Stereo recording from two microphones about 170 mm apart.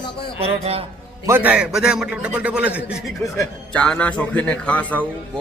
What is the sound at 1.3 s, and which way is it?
A man's voice, 10° right (ahead or behind).